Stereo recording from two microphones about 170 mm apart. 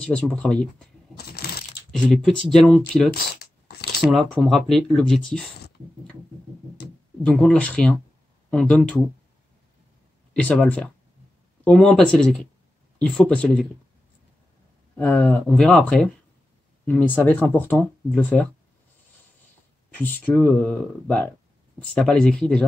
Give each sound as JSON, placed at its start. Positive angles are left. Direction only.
{"t": 0.0, "sound": "speech", "side_deg": 5}
{"t": 1.9, "sound": "speech", "side_deg": 5}
{"t": 3.3, "sound": "a sound", "side_deg": 70}
{"t": 4.0, "sound": "speech", "side_deg": 0}
{"t": 7.2, "sound": "speech", "side_deg": 10}
{"t": 10.3, "sound": "speech", "side_deg": 5}
{"t": 15.0, "sound": "speech", "side_deg": 5}
{"t": 19.9, "sound": "speech", "side_deg": 10}